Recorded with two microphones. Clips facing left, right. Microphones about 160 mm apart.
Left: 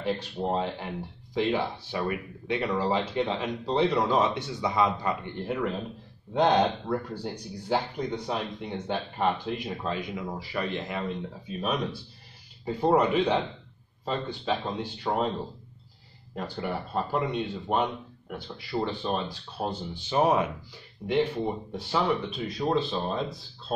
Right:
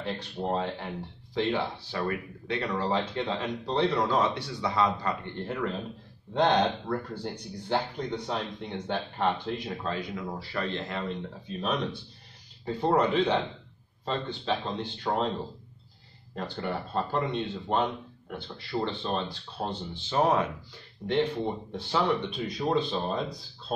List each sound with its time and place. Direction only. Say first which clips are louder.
0.0 s speech: left 3 dB; 15° left (ahead or behind)
16.3 s speech: left 1 dB; 10° left (ahead or behind)